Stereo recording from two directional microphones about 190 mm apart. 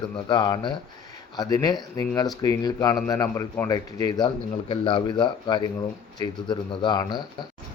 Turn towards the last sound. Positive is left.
turn(degrees=20)  # may be behind; listen again after turning